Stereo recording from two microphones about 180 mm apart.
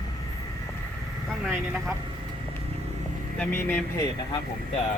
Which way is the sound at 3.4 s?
10° left (ahead or behind).